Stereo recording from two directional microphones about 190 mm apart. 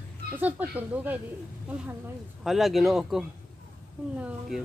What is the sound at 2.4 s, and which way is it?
Speech, centre (ahead or behind).